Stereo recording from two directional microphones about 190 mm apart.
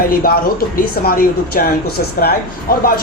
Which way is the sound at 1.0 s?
50° left (ahead or behind).